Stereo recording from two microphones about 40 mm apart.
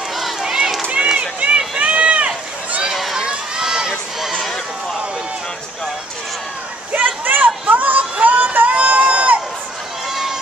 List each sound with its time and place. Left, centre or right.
0.1 s run: centre
1.1 s run: right
2.9 s run: centre
3.2 s crowd: centre
6.9 s a sound: right